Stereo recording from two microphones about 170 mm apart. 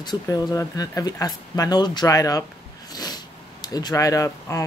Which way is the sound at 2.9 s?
25° left (ahead or behind).